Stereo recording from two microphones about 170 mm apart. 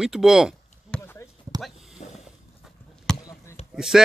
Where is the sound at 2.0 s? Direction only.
45° left (ahead or behind).